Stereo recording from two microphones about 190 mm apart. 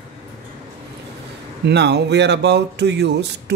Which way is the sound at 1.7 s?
65° right (ahead or behind).